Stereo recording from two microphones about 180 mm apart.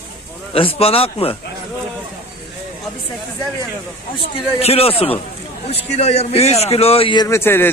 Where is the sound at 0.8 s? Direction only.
30° left (ahead or behind).